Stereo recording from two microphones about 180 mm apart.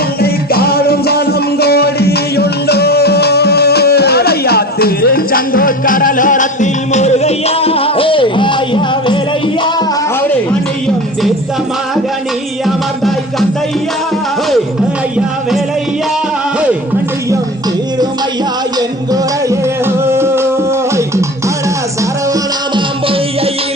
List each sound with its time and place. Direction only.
0.2 s music: 60° left (ahead or behind); by 9.1 s 25° left (ahead or behind)
18.8 s music: 20° right (ahead or behind)